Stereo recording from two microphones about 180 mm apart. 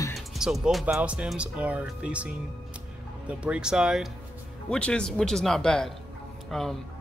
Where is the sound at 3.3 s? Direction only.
5° right (ahead or behind).